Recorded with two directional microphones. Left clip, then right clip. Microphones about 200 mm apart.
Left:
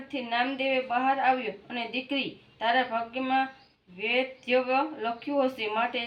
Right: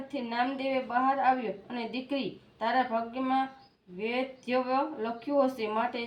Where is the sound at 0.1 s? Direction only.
15° right (ahead or behind).